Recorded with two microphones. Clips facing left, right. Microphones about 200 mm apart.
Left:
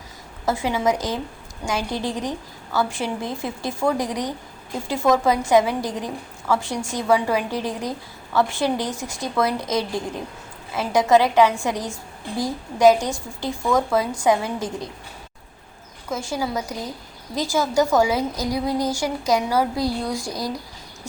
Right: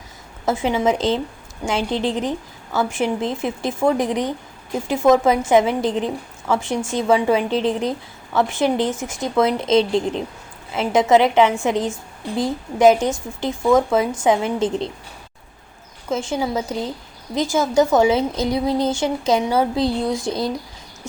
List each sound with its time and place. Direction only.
0.4 s a woman's voice: 20° right (ahead or behind)
16.0 s a woman's voice: 25° right (ahead or behind)